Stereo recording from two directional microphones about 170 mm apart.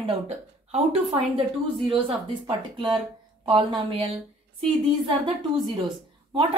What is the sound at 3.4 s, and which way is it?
Speech, 30° right (ahead or behind).